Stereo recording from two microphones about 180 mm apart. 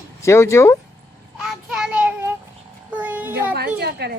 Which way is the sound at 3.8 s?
65° right (ahead or behind).